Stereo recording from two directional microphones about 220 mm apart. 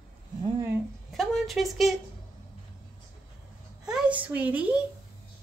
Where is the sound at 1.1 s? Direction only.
Centre (ahead or behind).